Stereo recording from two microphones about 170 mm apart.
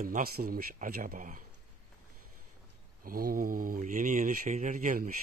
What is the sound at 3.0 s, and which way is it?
Speech, 60° right (ahead or behind).